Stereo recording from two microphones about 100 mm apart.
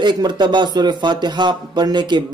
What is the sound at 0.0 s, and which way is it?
Speech, 50° right (ahead or behind).